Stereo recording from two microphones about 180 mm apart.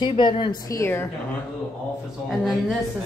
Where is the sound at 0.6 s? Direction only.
15° left (ahead or behind).